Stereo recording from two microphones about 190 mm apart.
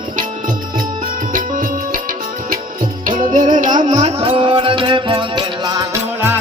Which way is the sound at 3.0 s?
40° right (ahead or behind).